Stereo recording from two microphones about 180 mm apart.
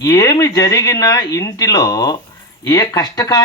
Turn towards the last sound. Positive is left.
turn(degrees=20)  # may be behind; listen again after turning